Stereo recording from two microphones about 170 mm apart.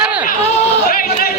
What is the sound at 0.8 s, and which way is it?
Yodeling, 55° left (ahead or behind).